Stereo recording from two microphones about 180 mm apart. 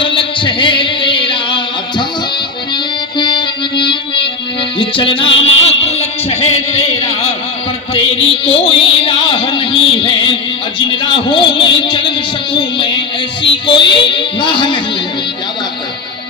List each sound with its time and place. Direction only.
0.0 s music: 30° left (ahead or behind)
3.2 s music: 25° left (ahead or behind)
13.4 s music: 25° left (ahead or behind)